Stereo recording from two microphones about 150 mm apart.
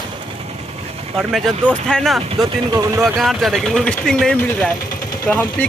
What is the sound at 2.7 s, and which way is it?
Speech, 25° right (ahead or behind).